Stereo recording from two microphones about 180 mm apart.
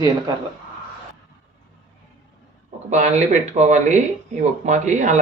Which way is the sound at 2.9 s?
40° right (ahead or behind).